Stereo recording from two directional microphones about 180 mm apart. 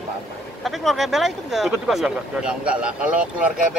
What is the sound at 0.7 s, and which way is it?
Speech, centre (ahead or behind).